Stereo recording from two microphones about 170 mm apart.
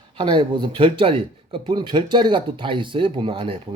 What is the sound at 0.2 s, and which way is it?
Speech, 25° right (ahead or behind).